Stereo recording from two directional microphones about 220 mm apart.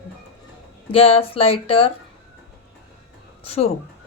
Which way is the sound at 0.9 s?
25° left (ahead or behind).